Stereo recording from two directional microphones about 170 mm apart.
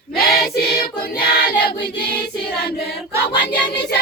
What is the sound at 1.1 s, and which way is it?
Child singing, 70° left (ahead or behind).